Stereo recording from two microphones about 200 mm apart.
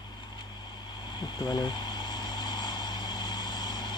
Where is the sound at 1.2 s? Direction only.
20° left (ahead or behind).